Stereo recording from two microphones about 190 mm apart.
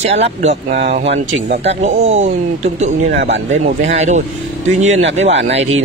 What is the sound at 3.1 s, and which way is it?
Speech, 70° right (ahead or behind).